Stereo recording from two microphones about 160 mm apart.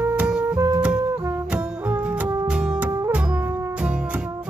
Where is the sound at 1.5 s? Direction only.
10° right (ahead or behind).